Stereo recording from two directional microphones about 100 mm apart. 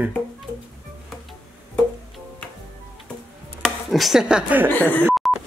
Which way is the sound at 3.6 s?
Centre (ahead or behind).